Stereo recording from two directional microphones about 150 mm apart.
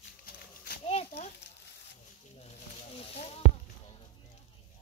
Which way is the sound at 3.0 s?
40° left (ahead or behind).